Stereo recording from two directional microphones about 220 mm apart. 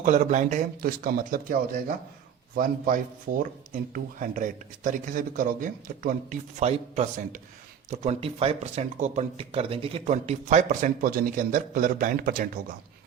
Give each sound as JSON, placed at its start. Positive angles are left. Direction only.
{"t": 0.0, "sound": "speech", "side_deg": -35}